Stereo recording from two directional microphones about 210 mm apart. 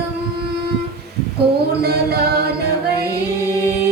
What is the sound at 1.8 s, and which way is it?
A capella, 50° right (ahead or behind).